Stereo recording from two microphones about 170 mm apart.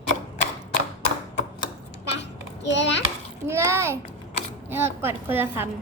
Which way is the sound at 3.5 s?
15° right (ahead or behind).